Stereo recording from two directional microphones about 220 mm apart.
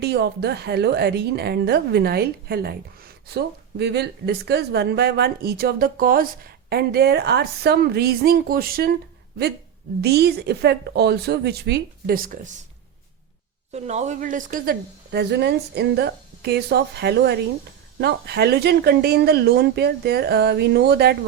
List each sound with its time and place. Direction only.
0.0 s speech: 45° right (ahead or behind)
10.0 s speech: 45° right (ahead or behind)
13.7 s speech: 30° right (ahead or behind); by 21.2 s 45° right (ahead or behind)